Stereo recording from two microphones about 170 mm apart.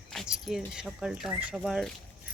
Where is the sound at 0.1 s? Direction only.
Centre (ahead or behind).